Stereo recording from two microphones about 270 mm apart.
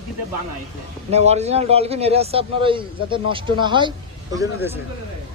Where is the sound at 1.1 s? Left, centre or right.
Right.